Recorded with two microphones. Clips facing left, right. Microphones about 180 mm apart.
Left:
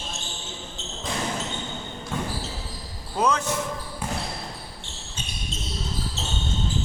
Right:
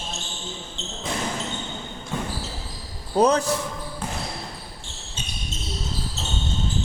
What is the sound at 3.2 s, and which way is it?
Speech, 35° right (ahead or behind).